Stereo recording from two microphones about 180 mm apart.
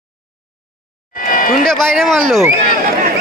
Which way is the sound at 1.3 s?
50° left (ahead or behind).